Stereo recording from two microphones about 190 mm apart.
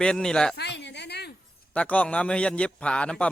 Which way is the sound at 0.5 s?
65° left (ahead or behind).